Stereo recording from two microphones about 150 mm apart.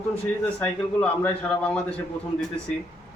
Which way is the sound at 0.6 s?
5° left (ahead or behind).